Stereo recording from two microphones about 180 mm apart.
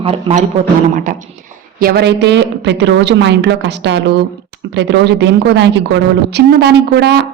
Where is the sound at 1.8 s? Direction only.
60° right (ahead or behind).